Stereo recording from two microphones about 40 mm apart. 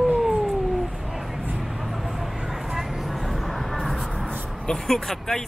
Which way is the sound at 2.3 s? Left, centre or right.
Centre.